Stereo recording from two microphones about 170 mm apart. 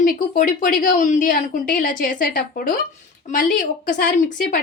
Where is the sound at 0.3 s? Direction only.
55° left (ahead or behind).